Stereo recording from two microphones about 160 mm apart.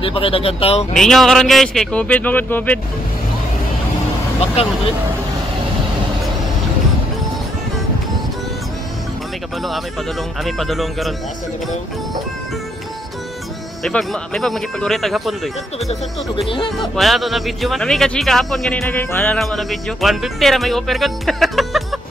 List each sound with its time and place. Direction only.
0.0 s speech: 35° left (ahead or behind)
0.9 s speech: 5° left (ahead or behind)
10.4 s speech: centre (ahead or behind)
13.8 s speech: 5° left (ahead or behind)
15.9 s speech: 35° left (ahead or behind)
16.7 s speech: centre (ahead or behind)
19.4 s speech: centre (ahead or behind)